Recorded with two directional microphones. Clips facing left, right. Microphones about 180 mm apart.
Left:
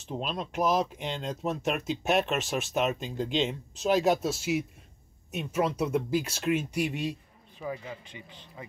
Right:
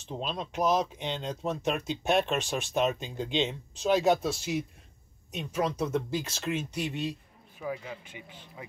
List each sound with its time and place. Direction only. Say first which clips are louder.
0.0 s speech: left 1 dB; 5° left (ahead or behind)
7.5 s speech: even; 5° right (ahead or behind)